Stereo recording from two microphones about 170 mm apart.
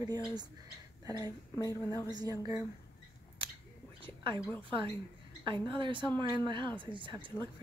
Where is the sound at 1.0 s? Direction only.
20° right (ahead or behind).